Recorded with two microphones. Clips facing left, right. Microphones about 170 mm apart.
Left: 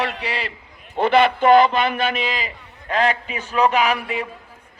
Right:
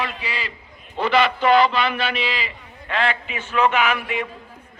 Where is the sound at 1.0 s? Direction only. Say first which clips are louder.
Left 3 dB; 50° left (ahead or behind).